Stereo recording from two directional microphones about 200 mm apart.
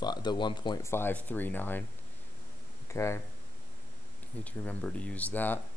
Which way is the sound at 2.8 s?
15° left (ahead or behind).